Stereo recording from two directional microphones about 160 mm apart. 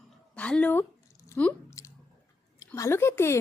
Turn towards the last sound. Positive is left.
turn(degrees=15)  # may be behind; listen again after turning